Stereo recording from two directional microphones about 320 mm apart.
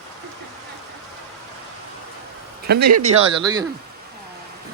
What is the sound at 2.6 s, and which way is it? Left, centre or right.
Speech, right.